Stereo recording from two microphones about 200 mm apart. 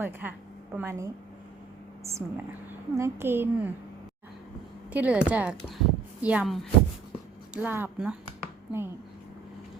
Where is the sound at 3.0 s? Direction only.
10° right (ahead or behind).